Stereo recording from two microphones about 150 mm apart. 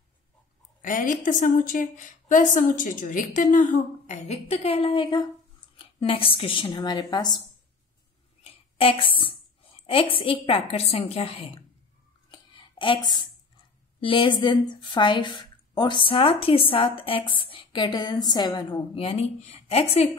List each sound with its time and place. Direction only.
0.8 s a woman's voice: 65° left (ahead or behind)
4.3 s a woman's voice: 45° left (ahead or behind); by 7.4 s 25° left (ahead or behind)
8.5 s a woman's voice: 40° left (ahead or behind)
12.3 s a sound: 35° left (ahead or behind)
14.0 s a woman's voice: 35° left (ahead or behind)